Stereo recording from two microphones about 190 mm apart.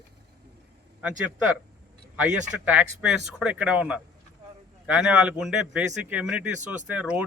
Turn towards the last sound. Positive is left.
turn(degrees=-10)  # may be behind; listen again after turning